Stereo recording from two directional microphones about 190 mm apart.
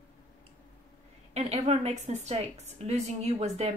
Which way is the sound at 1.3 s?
35° right (ahead or behind).